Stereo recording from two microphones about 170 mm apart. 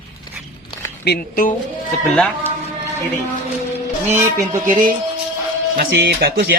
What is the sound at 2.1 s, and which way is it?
Speech, 10° left (ahead or behind).